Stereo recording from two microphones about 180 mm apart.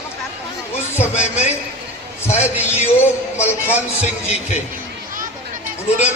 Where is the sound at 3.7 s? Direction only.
40° left (ahead or behind).